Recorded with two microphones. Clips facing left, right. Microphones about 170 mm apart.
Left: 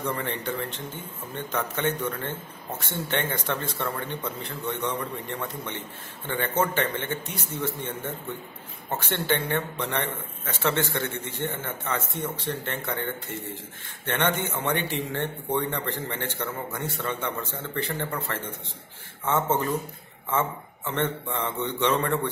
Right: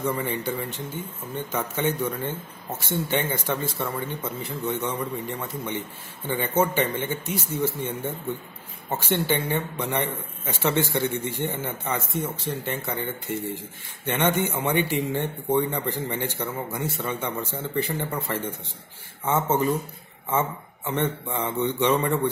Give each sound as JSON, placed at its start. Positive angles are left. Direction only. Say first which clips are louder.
{"t": 0.0, "sound": "a man's voice", "louder": "right 3 dB", "side_deg": -5}